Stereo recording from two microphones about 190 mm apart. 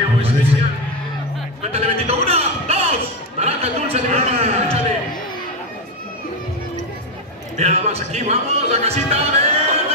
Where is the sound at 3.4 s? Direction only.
35° right (ahead or behind).